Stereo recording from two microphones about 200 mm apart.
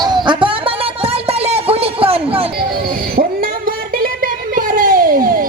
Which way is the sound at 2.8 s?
45° right (ahead or behind).